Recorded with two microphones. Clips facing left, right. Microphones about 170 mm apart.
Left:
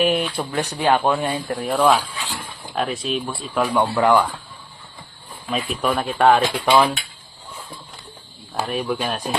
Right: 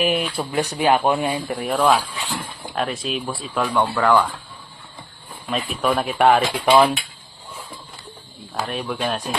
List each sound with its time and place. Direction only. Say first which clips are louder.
0.0 s speech: left 1 dB; centre (ahead or behind)
3.8 s speech: left 1 dB; 15° left (ahead or behind)
5.5 s speech: even; centre (ahead or behind)
8.6 s speech: left 1 dB; centre (ahead or behind)